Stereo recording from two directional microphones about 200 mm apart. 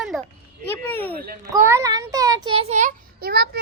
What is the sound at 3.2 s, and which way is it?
Child singing, 50° right (ahead or behind).